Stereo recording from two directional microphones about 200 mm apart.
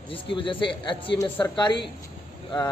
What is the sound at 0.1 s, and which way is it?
A man's voice, 25° left (ahead or behind).